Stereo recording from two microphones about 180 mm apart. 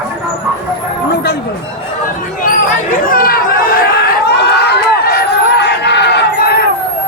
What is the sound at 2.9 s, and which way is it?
Chatter, 50° left (ahead or behind).